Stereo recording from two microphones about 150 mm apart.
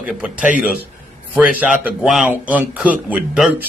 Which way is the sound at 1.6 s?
10° right (ahead or behind).